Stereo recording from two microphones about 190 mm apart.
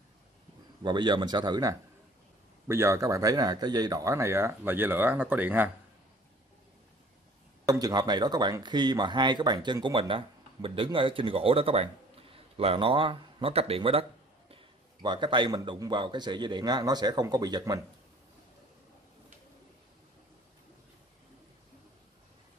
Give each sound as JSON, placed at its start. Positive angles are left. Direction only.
{"t": 0.8, "sound": "speech", "side_deg": -25}
{"t": 7.6, "sound": "speech", "side_deg": -20}